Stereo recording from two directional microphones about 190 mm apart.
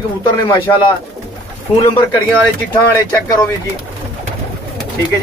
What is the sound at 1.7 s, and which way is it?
Speech, 30° left (ahead or behind).